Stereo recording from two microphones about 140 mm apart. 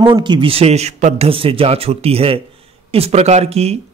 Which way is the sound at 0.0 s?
35° right (ahead or behind).